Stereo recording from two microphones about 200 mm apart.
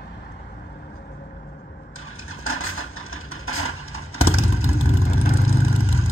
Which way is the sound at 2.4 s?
90° left.